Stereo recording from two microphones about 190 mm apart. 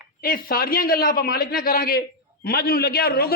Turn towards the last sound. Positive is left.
turn(degrees=55)  # may be behind; listen again after turning